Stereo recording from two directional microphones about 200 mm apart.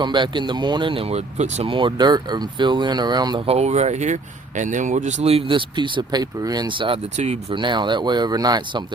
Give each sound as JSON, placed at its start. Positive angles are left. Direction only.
{"t": 0.0, "sound": "speech", "side_deg": -25}